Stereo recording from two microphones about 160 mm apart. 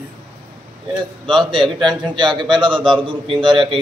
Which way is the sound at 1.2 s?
30° right (ahead or behind).